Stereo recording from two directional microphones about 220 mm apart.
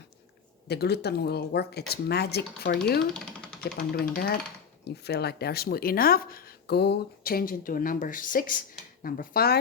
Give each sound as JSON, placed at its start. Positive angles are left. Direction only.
{"t": 0.7, "sound": "speech", "side_deg": 45}
{"t": 3.8, "sound": "speech", "side_deg": 40}